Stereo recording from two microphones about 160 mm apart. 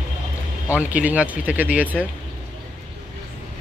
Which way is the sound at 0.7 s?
10° right (ahead or behind).